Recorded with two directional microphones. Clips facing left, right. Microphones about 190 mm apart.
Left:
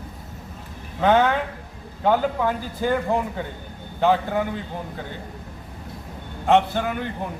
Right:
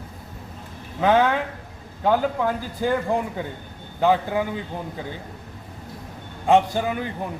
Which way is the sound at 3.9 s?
10° right (ahead or behind).